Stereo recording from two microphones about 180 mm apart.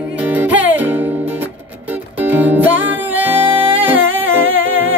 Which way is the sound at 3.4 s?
30° right (ahead or behind).